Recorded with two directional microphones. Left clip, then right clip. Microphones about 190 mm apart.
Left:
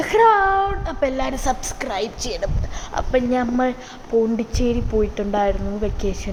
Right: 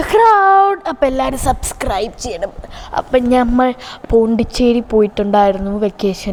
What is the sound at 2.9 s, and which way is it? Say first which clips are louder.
A woman's voice: right 7 dB; 40° right (ahead or behind).